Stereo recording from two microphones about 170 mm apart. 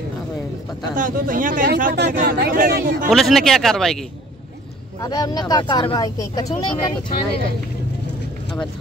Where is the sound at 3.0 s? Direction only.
Centre (ahead or behind).